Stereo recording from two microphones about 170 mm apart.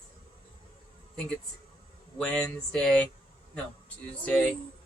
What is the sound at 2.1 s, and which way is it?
Speech, 5° left (ahead or behind).